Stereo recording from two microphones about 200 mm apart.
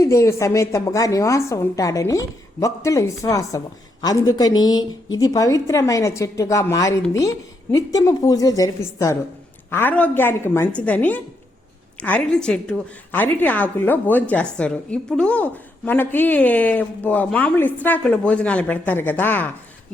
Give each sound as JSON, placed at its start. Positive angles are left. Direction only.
{"t": 0.0, "sound": "a woman's voice", "side_deg": 15}